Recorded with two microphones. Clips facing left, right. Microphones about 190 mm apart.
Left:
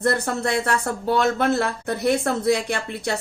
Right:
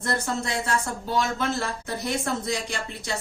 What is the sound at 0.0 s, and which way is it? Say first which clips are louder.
Speech: left 6 dB; 60° left (ahead or behind).